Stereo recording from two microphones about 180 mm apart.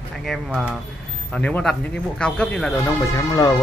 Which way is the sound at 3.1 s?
20° left (ahead or behind).